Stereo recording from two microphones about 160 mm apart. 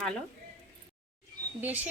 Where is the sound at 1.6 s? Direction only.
10° right (ahead or behind).